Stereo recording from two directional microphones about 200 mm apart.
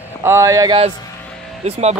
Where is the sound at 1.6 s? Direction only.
30° right (ahead or behind).